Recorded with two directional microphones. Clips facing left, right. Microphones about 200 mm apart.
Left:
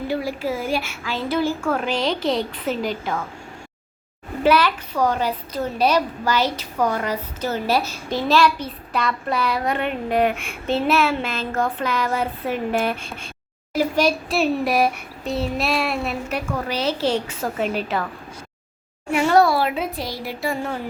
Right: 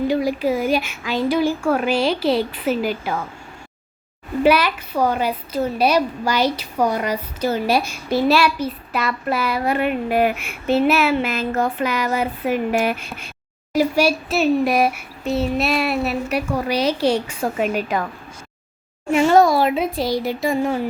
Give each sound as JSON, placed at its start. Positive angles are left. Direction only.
{"t": 0.1, "sound": "a woman's voice", "side_deg": -15}
{"t": 4.4, "sound": "a woman's voice", "side_deg": -10}
{"t": 13.0, "sound": "speech", "side_deg": 30}
{"t": 13.7, "sound": "a woman's voice", "side_deg": -10}
{"t": 19.1, "sound": "a woman's voice", "side_deg": -20}